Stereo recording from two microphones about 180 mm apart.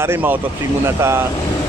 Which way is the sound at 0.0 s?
10° right (ahead or behind).